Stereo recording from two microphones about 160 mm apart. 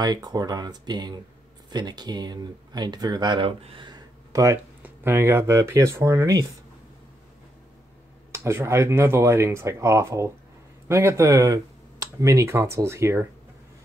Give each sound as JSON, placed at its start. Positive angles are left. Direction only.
{"t": 0.0, "sound": "speech", "side_deg": -25}
{"t": 8.3, "sound": "speech", "side_deg": -15}